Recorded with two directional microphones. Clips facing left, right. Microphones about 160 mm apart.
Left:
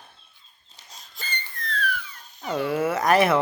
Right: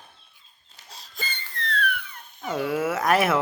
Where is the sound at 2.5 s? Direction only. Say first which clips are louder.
Left 1 dB; centre (ahead or behind).